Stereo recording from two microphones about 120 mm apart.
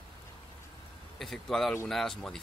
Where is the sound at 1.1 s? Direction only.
Centre (ahead or behind).